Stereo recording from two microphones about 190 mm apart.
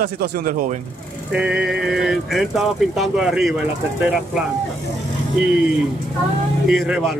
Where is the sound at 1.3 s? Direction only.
5° right (ahead or behind).